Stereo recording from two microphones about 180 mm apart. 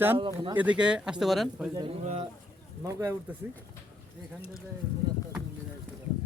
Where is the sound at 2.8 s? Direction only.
15° right (ahead or behind).